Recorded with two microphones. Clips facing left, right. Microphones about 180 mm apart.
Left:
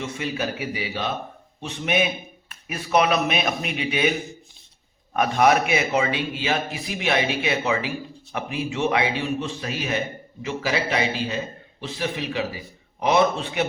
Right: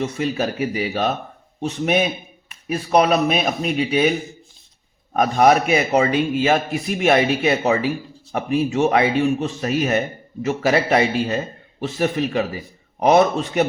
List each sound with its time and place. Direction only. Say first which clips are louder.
0.0 s a man's voice: right 6 dB; 40° right (ahead or behind)
5.1 s a man's voice: right 4 dB; 40° right (ahead or behind)